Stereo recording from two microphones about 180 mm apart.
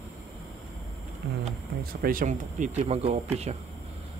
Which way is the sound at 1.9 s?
50° right (ahead or behind).